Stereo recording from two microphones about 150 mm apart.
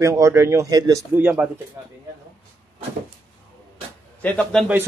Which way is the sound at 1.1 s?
10° right (ahead or behind).